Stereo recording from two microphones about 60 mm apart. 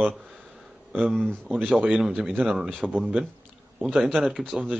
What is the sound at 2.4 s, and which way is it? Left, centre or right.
Speech, centre.